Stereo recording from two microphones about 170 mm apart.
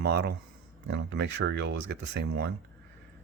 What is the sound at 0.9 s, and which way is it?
Speech, 90° right.